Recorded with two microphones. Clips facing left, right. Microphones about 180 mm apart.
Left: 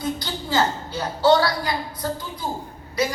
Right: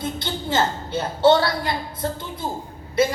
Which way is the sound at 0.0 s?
25° right (ahead or behind).